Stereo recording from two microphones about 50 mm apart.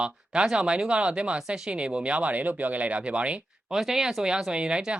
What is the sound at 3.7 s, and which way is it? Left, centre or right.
Speech, centre.